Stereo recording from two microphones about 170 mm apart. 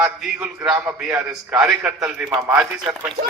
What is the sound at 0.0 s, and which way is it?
A man's voice, 10° right (ahead or behind).